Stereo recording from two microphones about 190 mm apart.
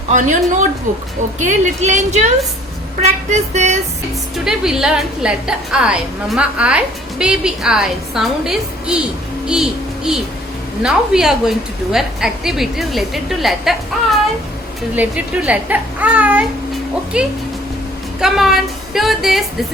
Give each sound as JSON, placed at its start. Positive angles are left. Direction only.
{"t": 0.1, "sound": "a woman's voice", "side_deg": -40}
{"t": 4.4, "sound": "a woman's voice", "side_deg": -5}
{"t": 9.5, "sound": "a sound", "side_deg": -5}
{"t": 10.8, "sound": "a woman's voice", "side_deg": -5}
{"t": 14.9, "sound": "a child's voice", "side_deg": -10}